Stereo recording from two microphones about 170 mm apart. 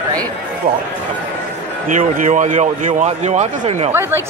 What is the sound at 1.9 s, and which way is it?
Speech, 45° right (ahead or behind).